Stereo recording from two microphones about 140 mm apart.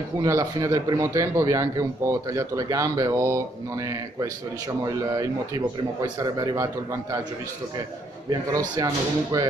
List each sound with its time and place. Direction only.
0.2 s a man's voice: 25° right (ahead or behind)
4.8 s a man's voice: 25° right (ahead or behind)
8.3 s a man's voice: 30° right (ahead or behind)